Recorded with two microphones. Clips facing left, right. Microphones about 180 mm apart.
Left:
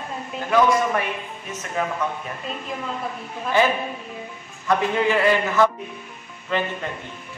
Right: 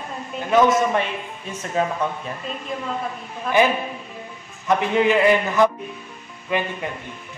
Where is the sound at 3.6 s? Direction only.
15° right (ahead or behind).